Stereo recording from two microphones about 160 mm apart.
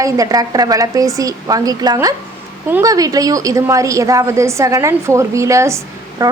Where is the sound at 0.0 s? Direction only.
20° right (ahead or behind).